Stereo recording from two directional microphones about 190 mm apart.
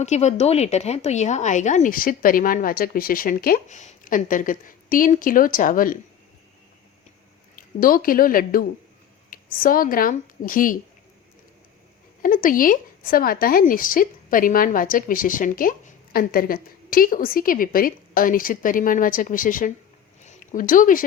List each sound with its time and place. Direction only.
0.0 s speech: 35° left (ahead or behind)
7.5 s a woman's voice: 50° left (ahead or behind)
12.2 s speech: 45° left (ahead or behind)